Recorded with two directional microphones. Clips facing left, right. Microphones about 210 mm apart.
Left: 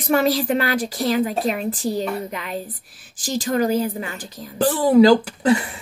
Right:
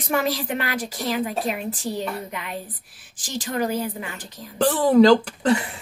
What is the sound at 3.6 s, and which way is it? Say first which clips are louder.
Speech: left 5 dB; 40° left (ahead or behind).